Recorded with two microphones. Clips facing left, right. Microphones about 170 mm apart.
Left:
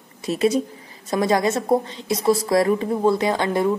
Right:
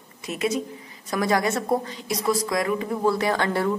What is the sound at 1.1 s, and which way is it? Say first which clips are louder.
A woman's voice: left 3 dB; 25° left (ahead or behind).